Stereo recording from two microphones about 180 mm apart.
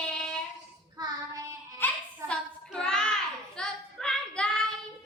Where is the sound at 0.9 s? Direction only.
20° right (ahead or behind).